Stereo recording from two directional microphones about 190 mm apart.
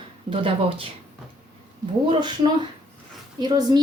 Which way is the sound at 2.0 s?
25° right (ahead or behind).